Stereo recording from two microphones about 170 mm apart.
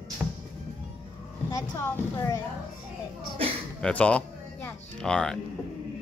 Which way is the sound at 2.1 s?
20° left (ahead or behind).